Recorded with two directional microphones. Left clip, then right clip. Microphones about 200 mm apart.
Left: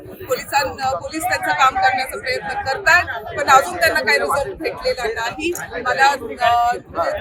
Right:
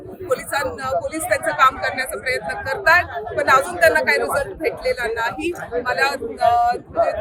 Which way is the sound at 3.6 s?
20° right (ahead or behind).